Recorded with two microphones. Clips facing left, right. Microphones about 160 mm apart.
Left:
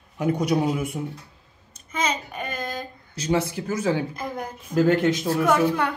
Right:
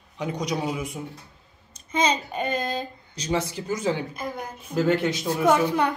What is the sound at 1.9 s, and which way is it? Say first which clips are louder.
Child singing: right 3 dB; 25° right (ahead or behind).